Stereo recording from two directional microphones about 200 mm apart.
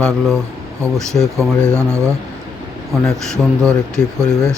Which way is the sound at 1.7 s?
15° right (ahead or behind).